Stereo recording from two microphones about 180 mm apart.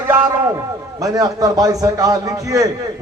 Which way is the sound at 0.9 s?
20° right (ahead or behind).